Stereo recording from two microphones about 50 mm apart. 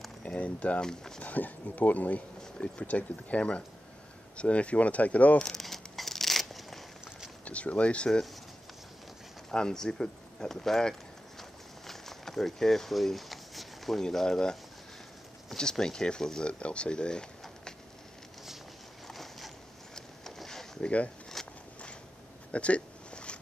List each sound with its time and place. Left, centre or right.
0.2 s speech: left
0.8 s speech: centre
1.2 s speech: left
5.4 s crumpling: centre
7.4 s speech: left
9.5 s a sound: centre
14.0 s speech: centre
19.0 s vehicle: centre
20.0 s a sound: centre
21.4 s walk: centre
22.5 s a sound: left